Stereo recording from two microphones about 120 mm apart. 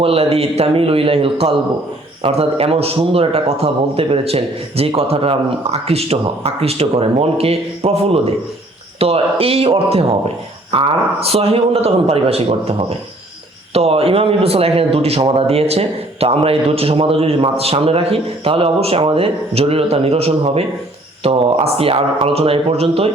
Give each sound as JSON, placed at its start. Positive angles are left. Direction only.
{"t": 0.0, "sound": "a man's voice", "side_deg": -55}